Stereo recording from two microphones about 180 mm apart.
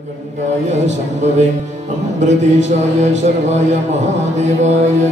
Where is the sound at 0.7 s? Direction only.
40° right (ahead or behind).